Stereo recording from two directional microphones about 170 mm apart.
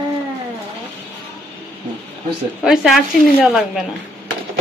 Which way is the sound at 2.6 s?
Centre (ahead or behind).